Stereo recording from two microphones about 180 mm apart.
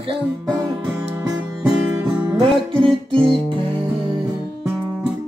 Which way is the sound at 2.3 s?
30° right (ahead or behind).